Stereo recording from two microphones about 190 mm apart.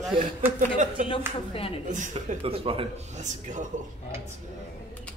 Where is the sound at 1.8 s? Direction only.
40° right (ahead or behind).